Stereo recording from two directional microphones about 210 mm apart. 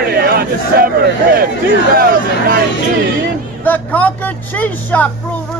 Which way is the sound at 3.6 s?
10° left (ahead or behind).